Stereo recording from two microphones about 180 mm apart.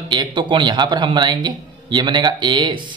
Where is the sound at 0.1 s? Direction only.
25° right (ahead or behind).